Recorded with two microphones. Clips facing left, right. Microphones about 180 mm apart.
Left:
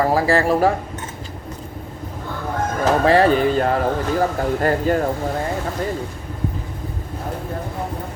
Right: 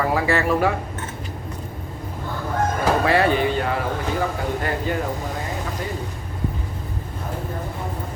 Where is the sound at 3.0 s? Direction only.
35° left (ahead or behind).